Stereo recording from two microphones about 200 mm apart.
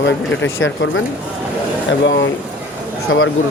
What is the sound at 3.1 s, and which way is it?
Speech, 90° left.